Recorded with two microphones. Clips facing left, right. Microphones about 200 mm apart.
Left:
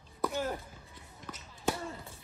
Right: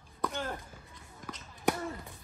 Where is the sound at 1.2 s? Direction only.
45° right (ahead or behind).